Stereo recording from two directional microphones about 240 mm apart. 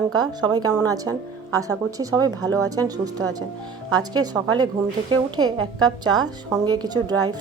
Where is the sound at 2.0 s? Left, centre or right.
Centre.